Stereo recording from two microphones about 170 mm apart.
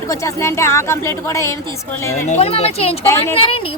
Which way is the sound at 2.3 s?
35° left (ahead or behind).